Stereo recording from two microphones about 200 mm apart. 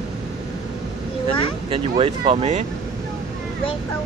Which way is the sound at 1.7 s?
30° right (ahead or behind).